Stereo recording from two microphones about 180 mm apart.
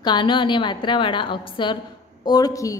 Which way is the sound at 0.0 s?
25° left (ahead or behind).